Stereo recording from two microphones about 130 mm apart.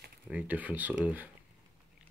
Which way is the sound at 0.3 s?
10° right (ahead or behind).